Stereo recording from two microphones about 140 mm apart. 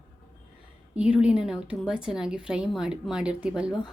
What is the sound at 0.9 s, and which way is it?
A woman's voice, 10° right (ahead or behind).